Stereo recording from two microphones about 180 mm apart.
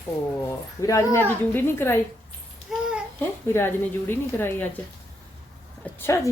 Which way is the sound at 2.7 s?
Centre (ahead or behind).